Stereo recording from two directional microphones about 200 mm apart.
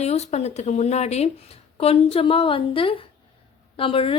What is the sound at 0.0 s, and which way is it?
A woman's voice, 35° left (ahead or behind).